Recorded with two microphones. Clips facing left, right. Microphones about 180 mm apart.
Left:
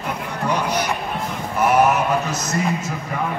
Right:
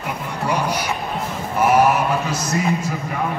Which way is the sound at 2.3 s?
10° right (ahead or behind).